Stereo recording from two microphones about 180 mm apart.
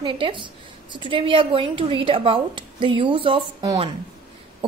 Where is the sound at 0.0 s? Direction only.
25° right (ahead or behind).